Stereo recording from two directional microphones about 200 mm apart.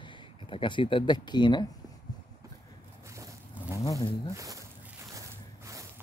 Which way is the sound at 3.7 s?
15° left (ahead or behind).